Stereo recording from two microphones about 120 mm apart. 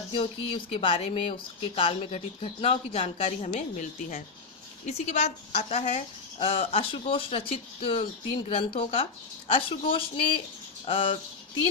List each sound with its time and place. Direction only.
0.1 s speech: 45° left (ahead or behind); by 3.8 s 70° left (ahead or behind)
4.9 s a woman's voice: 70° left (ahead or behind)
6.4 s speech: 55° left (ahead or behind)